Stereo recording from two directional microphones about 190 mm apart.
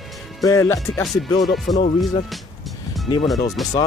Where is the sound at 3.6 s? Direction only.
Centre (ahead or behind).